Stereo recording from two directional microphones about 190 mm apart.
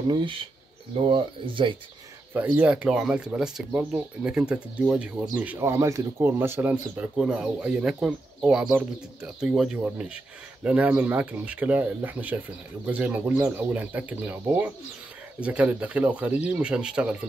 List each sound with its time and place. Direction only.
0.1 s speech: 25° right (ahead or behind)
2.3 s speech: 5° right (ahead or behind)